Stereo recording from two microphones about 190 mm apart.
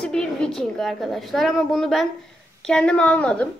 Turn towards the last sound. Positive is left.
turn(degrees=5)  # may be behind; listen again after turning